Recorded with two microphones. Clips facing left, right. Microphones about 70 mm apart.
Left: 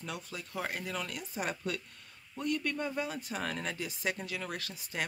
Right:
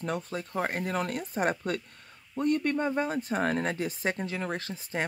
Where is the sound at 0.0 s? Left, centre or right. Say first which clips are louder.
Right 9 dB; right.